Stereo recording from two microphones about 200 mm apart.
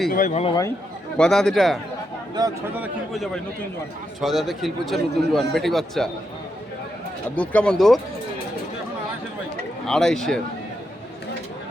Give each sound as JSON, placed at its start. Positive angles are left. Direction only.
{"t": 0.1, "sound": "speech", "side_deg": 40}
{"t": 1.1, "sound": "a man's voice", "side_deg": 5}
{"t": 2.4, "sound": "speech", "side_deg": -20}
{"t": 2.7, "sound": "a man's voice", "side_deg": -5}
{"t": 7.3, "sound": "a man's voice", "side_deg": 5}
{"t": 9.8, "sound": "a man's voice", "side_deg": 0}